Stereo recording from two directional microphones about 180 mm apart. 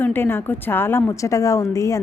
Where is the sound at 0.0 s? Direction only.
10° left (ahead or behind).